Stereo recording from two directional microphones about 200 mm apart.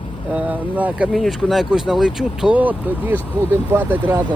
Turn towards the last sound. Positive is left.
turn(degrees=-10)  # may be behind; listen again after turning